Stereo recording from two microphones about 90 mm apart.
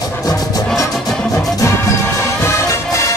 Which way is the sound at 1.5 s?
35° left (ahead or behind).